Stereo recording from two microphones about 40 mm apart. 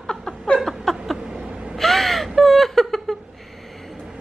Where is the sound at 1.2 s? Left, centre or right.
Centre.